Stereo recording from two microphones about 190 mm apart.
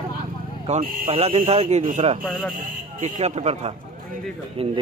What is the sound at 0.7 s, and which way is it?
Speech, 50° right (ahead or behind).